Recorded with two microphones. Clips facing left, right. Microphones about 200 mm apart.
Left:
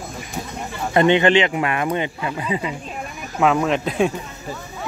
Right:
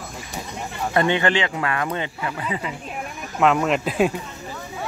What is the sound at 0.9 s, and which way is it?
Speech, 20° left (ahead or behind).